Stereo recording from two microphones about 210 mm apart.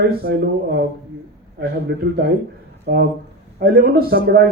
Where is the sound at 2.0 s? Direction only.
50° right (ahead or behind).